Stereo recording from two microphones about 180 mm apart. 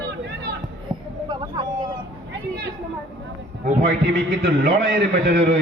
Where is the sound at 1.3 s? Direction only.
25° right (ahead or behind).